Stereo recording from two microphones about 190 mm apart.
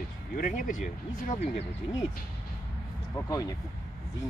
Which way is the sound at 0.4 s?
40° left (ahead or behind).